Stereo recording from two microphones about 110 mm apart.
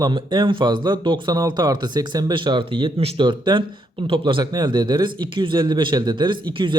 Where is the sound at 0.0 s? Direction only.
40° right (ahead or behind).